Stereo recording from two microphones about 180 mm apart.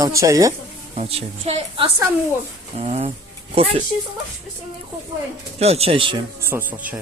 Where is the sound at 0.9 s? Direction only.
35° right (ahead or behind).